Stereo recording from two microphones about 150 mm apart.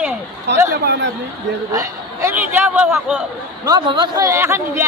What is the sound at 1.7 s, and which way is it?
Speech, 20° right (ahead or behind).